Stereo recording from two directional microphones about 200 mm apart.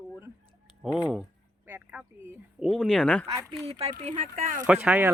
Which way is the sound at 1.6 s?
10° right (ahead or behind).